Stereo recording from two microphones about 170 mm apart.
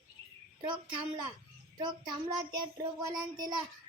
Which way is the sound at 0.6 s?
25° right (ahead or behind).